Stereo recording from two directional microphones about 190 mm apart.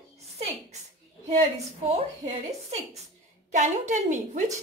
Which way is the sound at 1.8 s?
35° right (ahead or behind).